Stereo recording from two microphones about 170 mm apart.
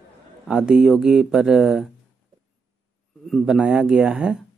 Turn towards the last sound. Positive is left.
turn(degrees=-5)  # may be behind; listen again after turning